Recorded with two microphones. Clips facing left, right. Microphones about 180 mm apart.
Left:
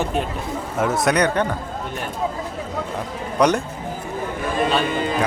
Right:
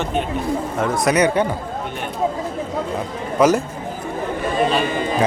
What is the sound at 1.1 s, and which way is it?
Speech, 10° right (ahead or behind).